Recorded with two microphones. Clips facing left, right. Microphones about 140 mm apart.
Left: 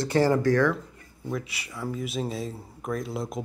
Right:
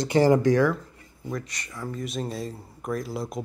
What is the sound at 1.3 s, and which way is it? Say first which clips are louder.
Speech: left 1 dB; 5° left (ahead or behind).